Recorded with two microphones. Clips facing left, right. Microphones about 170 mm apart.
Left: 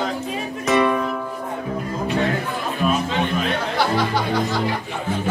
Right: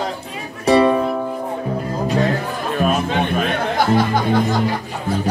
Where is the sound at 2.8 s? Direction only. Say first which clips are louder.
Right 2 dB; 50° right (ahead or behind).